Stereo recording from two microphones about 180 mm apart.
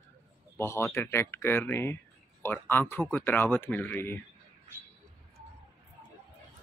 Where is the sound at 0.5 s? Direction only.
15° left (ahead or behind).